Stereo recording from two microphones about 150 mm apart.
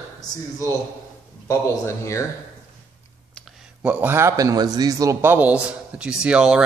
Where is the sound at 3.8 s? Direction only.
10° right (ahead or behind).